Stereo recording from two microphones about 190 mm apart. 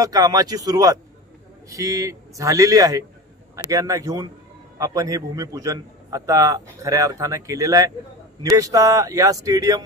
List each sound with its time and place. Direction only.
0.0 s a man's voice: 20° right (ahead or behind)